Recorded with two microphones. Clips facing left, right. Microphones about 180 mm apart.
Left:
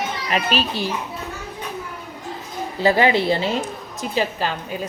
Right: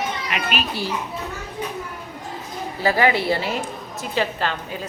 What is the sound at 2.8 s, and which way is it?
A woman's voice, 25° left (ahead or behind).